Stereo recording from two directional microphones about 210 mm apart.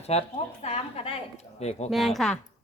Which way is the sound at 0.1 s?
30° left (ahead or behind).